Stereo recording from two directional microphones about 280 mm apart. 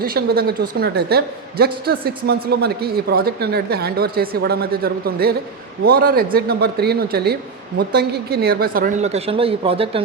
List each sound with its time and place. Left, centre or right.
0.0 s a woman's voice: right